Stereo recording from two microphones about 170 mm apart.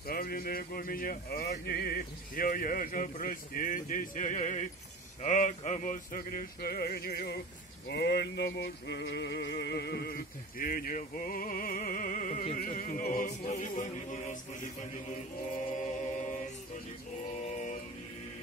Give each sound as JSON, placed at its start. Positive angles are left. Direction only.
{"t": 0.0, "sound": "speech", "side_deg": 60}
{"t": 7.9, "sound": "a sound", "side_deg": 75}
{"t": 12.5, "sound": "music", "side_deg": 55}